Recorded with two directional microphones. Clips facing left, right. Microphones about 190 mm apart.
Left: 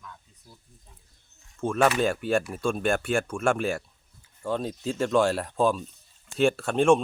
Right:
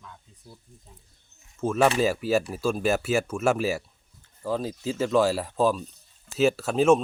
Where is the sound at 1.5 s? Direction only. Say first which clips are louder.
Right 1 dB; 5° right (ahead or behind).